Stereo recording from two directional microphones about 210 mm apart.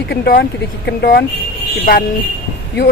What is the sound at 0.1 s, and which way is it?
Speech, 45° left (ahead or behind).